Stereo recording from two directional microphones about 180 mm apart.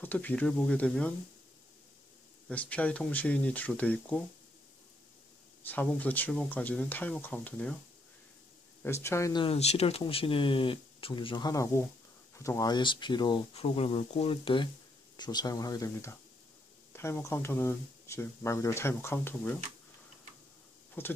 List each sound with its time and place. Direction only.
0.0 s speech: 10° left (ahead or behind)
2.4 s speech: 5° left (ahead or behind)
5.6 s speech: 10° left (ahead or behind)
8.8 s speech: 15° left (ahead or behind)
9.4 s speech: 35° left (ahead or behind); by 19.6 s 10° left (ahead or behind)
21.0 s speech: 10° left (ahead or behind)